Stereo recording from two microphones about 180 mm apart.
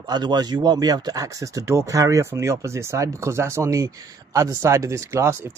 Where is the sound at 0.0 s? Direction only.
25° right (ahead or behind).